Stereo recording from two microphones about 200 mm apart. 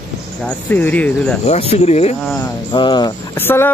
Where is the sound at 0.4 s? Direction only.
5° left (ahead or behind).